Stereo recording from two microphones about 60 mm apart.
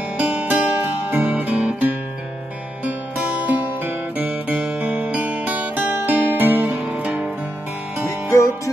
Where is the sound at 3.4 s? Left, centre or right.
Right.